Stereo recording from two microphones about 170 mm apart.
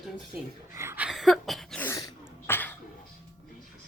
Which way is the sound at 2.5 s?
10° left (ahead or behind).